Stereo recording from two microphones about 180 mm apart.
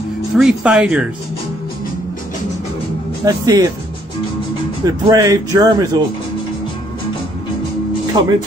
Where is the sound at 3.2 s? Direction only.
20° right (ahead or behind).